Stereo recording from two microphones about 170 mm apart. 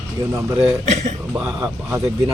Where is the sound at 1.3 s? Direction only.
5° right (ahead or behind).